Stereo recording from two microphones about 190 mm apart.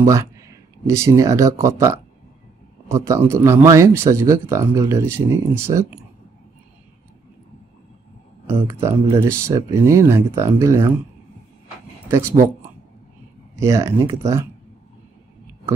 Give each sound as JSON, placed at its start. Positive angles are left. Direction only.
{"t": 0.0, "sound": "speech", "side_deg": -15}
{"t": 8.6, "sound": "speech", "side_deg": -15}
{"t": 13.6, "sound": "speech", "side_deg": -15}